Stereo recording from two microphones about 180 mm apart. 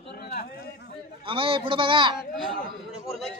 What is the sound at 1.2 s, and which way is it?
Speech, 30° right (ahead or behind).